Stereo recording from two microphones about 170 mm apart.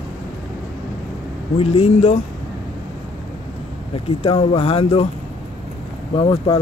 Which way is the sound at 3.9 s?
35° left (ahead or behind).